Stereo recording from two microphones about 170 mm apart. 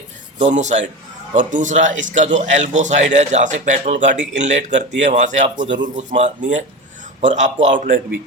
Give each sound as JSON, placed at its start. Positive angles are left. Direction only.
{"t": 0.3, "sound": "a man's voice", "side_deg": -45}